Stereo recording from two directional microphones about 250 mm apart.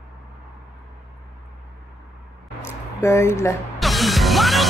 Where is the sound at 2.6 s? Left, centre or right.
Centre.